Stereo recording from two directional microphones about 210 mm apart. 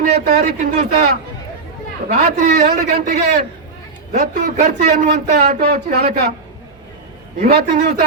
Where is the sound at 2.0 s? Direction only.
40° right (ahead or behind).